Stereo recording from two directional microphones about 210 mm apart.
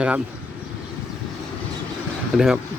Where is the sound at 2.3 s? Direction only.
Centre (ahead or behind).